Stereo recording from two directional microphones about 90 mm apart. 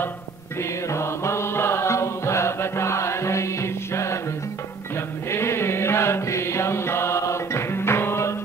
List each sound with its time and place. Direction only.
0.6 s music: 30° left (ahead or behind)
5.3 s mantra: 30° left (ahead or behind)